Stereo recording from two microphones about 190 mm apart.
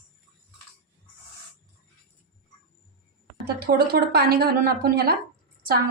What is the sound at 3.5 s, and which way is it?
A woman's voice, 55° right (ahead or behind).